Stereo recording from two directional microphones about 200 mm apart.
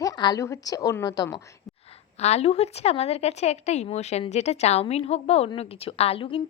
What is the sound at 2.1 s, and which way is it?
A woman's voice, 30° left (ahead or behind).